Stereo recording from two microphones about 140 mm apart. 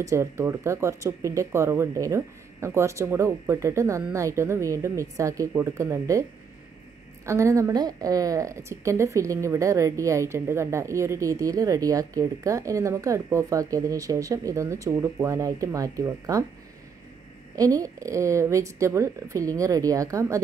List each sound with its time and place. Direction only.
0.0 s a woman's voice: 20° right (ahead or behind)
7.2 s a woman's voice: 20° right (ahead or behind)
17.6 s a woman's voice: 25° right (ahead or behind)